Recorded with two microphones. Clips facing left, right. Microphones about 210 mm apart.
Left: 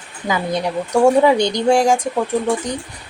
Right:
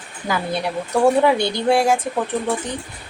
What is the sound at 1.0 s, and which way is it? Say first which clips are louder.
Speech: left 3 dB; 15° left (ahead or behind).